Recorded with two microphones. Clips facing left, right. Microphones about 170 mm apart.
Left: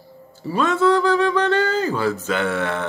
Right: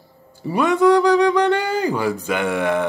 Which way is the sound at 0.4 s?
15° right (ahead or behind).